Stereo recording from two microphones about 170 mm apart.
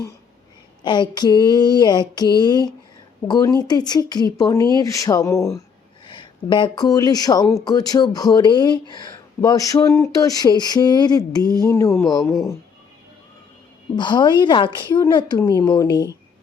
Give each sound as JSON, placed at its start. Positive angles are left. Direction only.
{"t": 0.9, "sound": "speech", "side_deg": 25}
{"t": 6.1, "sound": "speech", "side_deg": 30}
{"t": 13.9, "sound": "speech", "side_deg": 25}